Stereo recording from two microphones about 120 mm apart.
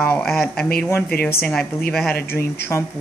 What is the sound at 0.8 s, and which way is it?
Speech, 20° left (ahead or behind).